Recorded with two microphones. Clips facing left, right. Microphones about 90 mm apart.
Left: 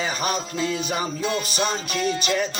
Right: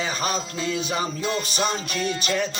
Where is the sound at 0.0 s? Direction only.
10° left (ahead or behind).